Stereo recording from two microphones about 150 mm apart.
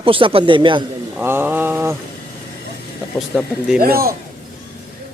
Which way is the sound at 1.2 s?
15° right (ahead or behind).